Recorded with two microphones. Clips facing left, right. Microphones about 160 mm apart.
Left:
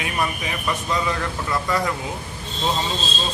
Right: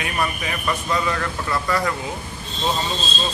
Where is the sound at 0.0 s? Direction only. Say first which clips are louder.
Even; 20° left (ahead or behind).